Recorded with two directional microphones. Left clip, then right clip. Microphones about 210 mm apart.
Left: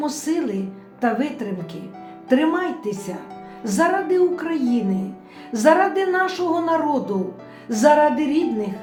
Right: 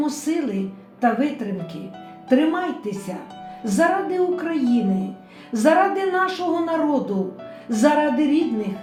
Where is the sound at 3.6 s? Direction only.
20° left (ahead or behind).